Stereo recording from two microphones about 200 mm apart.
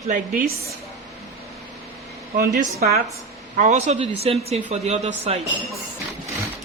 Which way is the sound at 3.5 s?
35° right (ahead or behind).